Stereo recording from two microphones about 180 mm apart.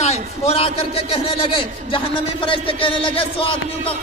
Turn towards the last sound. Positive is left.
turn(degrees=30)  # may be behind; listen again after turning